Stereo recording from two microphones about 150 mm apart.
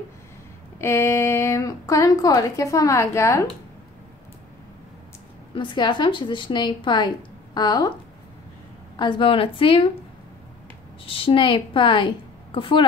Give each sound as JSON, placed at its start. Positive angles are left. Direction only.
{"t": 0.7, "sound": "a woman's voice", "side_deg": 15}
{"t": 5.5, "sound": "a woman's voice", "side_deg": 30}
{"t": 8.9, "sound": "a woman's voice", "side_deg": 30}
{"t": 11.1, "sound": "a woman's voice", "side_deg": 35}